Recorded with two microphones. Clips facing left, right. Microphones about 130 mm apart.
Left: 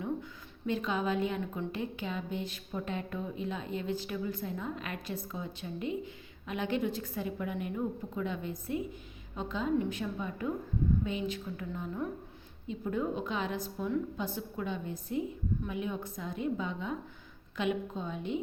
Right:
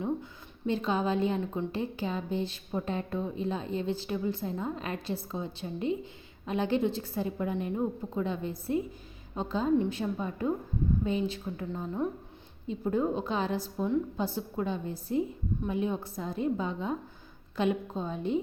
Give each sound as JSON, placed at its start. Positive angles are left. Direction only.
{"t": 0.0, "sound": "a woman's voice", "side_deg": -30}